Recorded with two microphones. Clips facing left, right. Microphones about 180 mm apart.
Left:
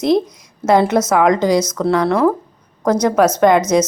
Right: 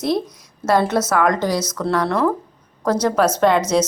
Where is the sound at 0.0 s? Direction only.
20° left (ahead or behind).